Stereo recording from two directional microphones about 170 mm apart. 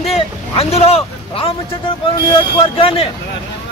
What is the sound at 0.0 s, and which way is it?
Vehicle, 35° left (ahead or behind).